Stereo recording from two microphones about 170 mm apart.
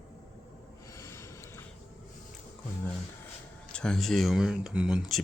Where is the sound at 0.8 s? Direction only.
15° left (ahead or behind).